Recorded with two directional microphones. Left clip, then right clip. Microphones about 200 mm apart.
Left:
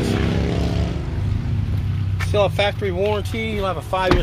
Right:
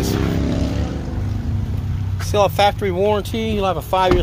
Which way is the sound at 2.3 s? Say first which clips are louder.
Right 4 dB; 10° right (ahead or behind).